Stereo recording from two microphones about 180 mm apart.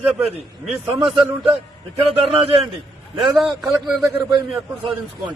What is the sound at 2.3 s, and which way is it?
Speech, 35° right (ahead or behind).